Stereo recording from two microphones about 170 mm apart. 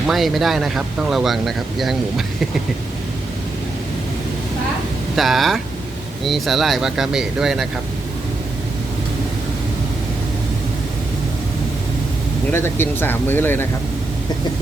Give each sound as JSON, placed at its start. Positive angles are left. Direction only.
{"t": 0.1, "sound": "speech", "side_deg": 0}
{"t": 5.1, "sound": "speech", "side_deg": 0}
{"t": 12.5, "sound": "speech", "side_deg": 15}